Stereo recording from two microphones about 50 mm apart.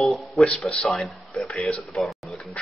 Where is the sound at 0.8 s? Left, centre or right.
Centre.